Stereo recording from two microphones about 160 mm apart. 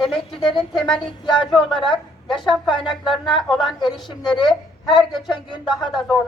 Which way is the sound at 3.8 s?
25° left (ahead or behind).